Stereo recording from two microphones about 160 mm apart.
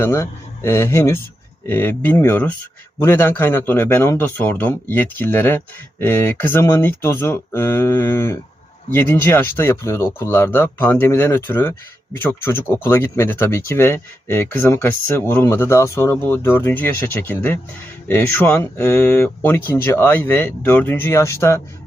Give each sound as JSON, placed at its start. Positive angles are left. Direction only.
{"t": 0.0, "sound": "speech", "side_deg": 15}